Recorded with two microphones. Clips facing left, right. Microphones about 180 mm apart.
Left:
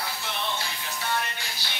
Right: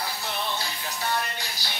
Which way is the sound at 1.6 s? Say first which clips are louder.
Right 2 dB; 40° right (ahead or behind).